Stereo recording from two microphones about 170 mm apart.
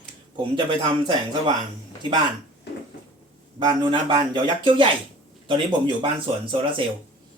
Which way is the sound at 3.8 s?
30° right (ahead or behind).